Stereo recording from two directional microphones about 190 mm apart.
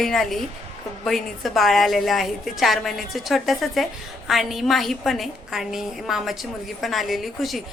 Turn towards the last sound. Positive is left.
turn(degrees=0)  # may be behind; listen again after turning